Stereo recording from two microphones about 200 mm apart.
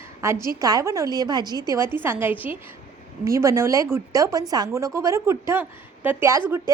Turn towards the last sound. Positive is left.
turn(degrees=-10)  # may be behind; listen again after turning